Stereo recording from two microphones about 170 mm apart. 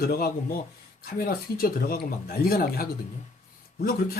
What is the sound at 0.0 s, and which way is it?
Speech, 60° left (ahead or behind).